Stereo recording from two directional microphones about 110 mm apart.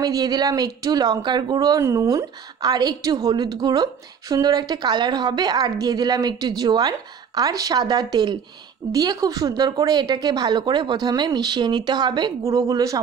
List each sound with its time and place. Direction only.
0.0 s a woman's voice: 35° right (ahead or behind)